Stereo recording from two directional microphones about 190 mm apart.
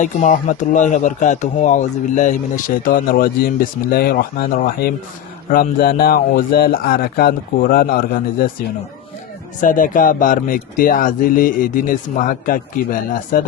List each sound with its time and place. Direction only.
0.0 s speech: 40° left (ahead or behind)